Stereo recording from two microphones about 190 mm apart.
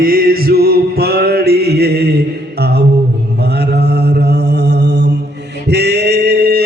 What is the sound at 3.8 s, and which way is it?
Mantra, 60° right (ahead or behind).